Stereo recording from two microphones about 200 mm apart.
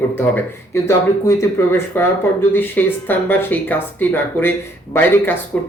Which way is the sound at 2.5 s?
10° left (ahead or behind).